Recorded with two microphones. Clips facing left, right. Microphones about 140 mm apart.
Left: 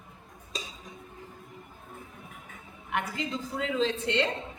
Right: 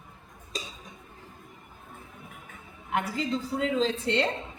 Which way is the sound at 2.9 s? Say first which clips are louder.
Right 3 dB; 35° right (ahead or behind).